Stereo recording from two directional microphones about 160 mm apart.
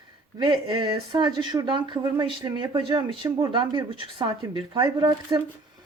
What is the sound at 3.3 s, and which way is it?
Speech, 20° right (ahead or behind).